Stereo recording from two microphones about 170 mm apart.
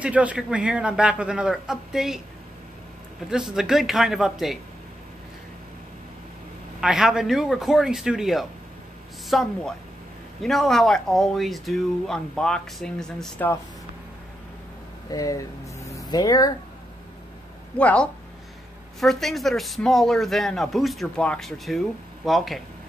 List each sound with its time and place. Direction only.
0.0 s speech: 10° right (ahead or behind)
3.3 s speech: 5° right (ahead or behind)
6.8 s speech: 5° right (ahead or behind)
15.0 s a sound: 20° left (ahead or behind)
17.7 s speech: 5° left (ahead or behind)